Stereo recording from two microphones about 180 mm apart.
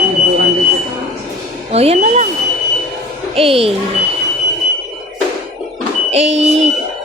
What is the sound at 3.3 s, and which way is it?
Speech, 30° right (ahead or behind).